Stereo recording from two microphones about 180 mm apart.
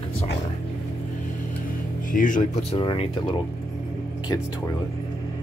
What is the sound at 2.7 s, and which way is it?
Speech, 30° left (ahead or behind).